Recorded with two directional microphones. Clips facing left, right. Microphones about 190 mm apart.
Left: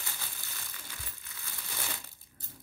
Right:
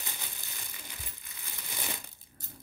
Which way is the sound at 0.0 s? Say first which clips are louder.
Right 1 dB; 20° right (ahead or behind).